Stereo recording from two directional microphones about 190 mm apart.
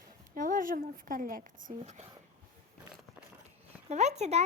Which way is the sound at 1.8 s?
35° right (ahead or behind).